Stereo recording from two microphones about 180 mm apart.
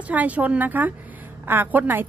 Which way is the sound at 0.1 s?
10° right (ahead or behind).